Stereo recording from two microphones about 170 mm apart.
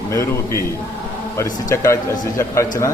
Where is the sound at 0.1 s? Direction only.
15° left (ahead or behind).